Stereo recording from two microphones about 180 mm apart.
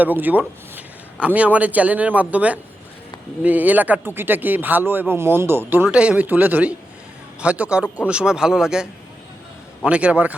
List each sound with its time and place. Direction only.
0.0 s a man's voice: 10° right (ahead or behind)